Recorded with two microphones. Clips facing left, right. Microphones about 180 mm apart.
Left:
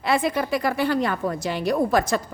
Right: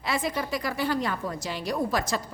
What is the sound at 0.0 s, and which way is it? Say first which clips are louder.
A woman's voice: left 6 dB; 60° left (ahead or behind).